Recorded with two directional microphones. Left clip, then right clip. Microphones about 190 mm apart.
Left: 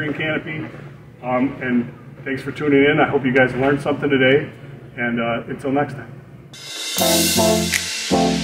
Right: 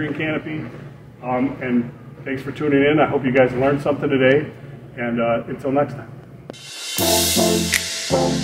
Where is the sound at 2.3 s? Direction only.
20° right (ahead or behind).